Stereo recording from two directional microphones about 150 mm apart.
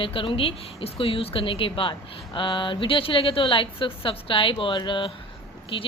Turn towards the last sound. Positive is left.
turn(degrees=35)  # may be behind; listen again after turning